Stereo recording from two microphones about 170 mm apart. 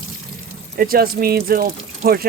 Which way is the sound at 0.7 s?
60° right (ahead or behind).